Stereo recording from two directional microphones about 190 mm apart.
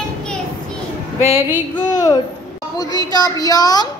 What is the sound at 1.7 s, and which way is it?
A woman's voice, 20° left (ahead or behind).